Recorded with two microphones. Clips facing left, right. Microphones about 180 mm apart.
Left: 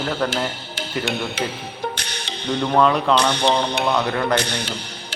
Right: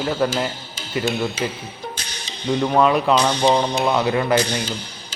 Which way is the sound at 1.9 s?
65° left (ahead or behind).